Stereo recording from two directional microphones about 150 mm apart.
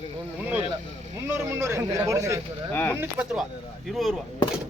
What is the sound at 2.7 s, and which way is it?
Speech, 15° left (ahead or behind).